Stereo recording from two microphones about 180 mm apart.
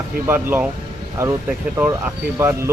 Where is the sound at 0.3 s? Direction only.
10° right (ahead or behind).